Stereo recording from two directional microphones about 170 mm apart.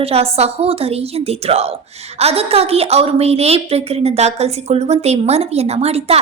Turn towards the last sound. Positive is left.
turn(degrees=-35)  # may be behind; listen again after turning